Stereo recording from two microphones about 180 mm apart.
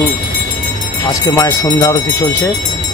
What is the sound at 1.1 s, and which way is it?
Speech, 20° left (ahead or behind).